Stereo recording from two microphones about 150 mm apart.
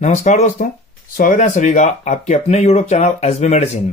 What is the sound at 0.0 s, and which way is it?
Speech, 50° left (ahead or behind).